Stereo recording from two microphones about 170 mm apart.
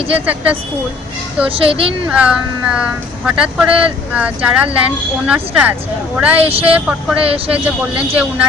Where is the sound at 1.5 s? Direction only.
35° right (ahead or behind).